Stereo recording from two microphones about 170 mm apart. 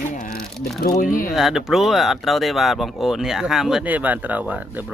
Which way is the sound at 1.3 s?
Centre (ahead or behind).